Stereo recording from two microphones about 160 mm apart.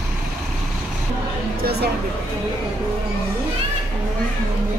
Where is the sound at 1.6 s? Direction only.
90° right.